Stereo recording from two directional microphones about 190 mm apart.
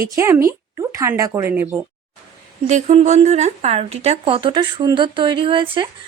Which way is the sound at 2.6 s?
40° right (ahead or behind).